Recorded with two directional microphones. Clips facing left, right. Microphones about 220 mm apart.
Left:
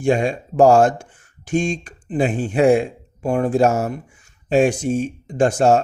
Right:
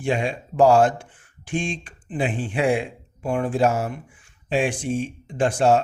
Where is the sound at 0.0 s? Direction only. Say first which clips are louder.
Left 6 dB; 45° left (ahead or behind).